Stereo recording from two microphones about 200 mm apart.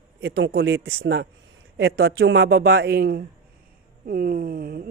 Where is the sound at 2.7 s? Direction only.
55° right (ahead or behind).